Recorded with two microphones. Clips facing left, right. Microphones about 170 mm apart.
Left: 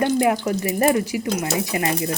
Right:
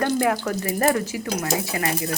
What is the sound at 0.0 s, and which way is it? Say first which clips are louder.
A woman's voice: left 3 dB; 20° left (ahead or behind).